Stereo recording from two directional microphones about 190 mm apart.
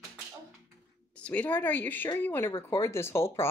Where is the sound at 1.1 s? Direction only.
5° left (ahead or behind).